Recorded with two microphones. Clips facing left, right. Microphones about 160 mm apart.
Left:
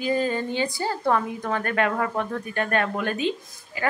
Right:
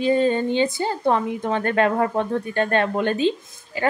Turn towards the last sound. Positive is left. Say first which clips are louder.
# right 4 dB
turn(degrees=-30)  # may be behind; listen again after turning